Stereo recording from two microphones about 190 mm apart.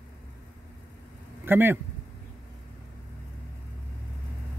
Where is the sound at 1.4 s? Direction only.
10° right (ahead or behind).